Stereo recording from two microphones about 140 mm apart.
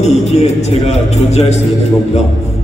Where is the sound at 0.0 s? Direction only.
55° left (ahead or behind).